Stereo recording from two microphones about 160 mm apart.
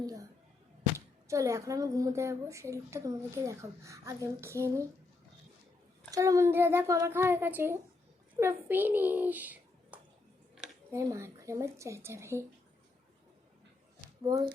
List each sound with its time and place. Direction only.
0.9 s speech: 20° right (ahead or behind)
6.1 s a child's voice: 20° right (ahead or behind)
14.3 s speech: 25° right (ahead or behind)